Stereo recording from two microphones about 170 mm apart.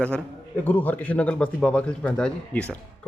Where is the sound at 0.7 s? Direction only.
10° left (ahead or behind).